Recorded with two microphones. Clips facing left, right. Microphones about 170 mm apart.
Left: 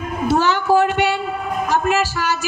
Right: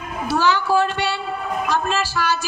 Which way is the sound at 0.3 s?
50° left (ahead or behind).